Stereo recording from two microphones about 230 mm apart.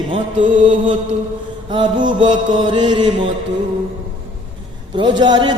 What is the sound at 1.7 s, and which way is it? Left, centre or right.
A man's voice, right.